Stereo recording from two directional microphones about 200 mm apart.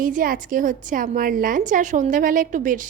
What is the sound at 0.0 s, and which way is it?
A woman's voice, 45° right (ahead or behind).